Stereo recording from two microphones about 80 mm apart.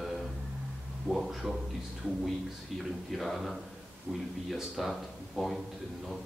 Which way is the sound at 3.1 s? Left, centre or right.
Centre.